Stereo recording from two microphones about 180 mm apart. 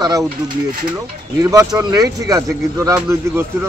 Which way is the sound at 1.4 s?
15° right (ahead or behind).